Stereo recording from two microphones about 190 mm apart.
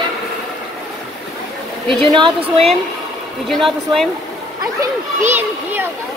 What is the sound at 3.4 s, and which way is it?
Speech, centre (ahead or behind).